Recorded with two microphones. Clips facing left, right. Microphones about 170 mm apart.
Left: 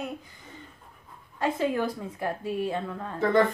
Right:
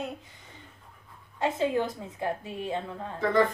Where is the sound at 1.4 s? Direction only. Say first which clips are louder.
Even; 20° right (ahead or behind).